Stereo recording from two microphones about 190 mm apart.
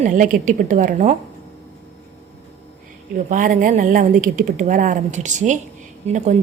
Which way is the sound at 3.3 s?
45° right (ahead or behind).